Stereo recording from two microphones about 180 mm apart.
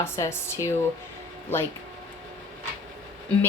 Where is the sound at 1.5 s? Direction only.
10° left (ahead or behind).